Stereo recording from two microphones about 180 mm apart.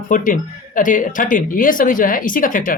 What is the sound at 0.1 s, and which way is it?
Speech, 45° left (ahead or behind).